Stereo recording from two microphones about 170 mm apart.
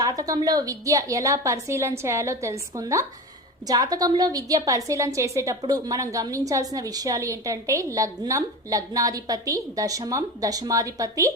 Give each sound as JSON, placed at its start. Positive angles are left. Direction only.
{"t": 0.0, "sound": "a woman's voice", "side_deg": -20}